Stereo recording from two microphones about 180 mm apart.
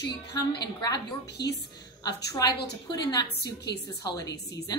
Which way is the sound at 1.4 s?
65° left (ahead or behind).